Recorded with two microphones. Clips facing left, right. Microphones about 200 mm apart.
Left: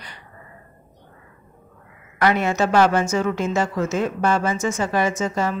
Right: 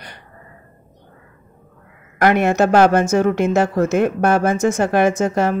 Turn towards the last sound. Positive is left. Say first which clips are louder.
# right 6 dB
turn(degrees=-60)  # may be behind; listen again after turning